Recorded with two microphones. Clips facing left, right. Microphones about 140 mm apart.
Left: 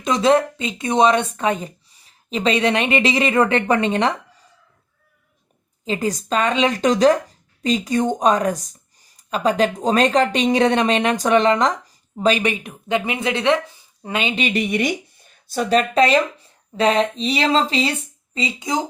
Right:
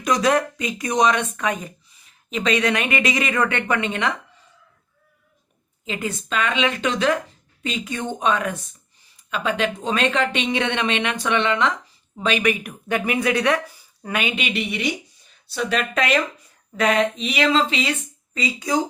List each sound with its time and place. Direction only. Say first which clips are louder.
0.0 s speech: left 3 dB; 25° left (ahead or behind)
5.8 s speech: left 5 dB; 35° left (ahead or behind)
14.4 s speech: left 5 dB; 45° left (ahead or behind)
15.8 s speech: left 5 dB; 30° left (ahead or behind)
18.3 s speech: even; 25° left (ahead or behind)